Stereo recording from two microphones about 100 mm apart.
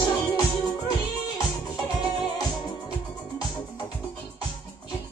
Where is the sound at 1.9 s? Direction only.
45° left (ahead or behind).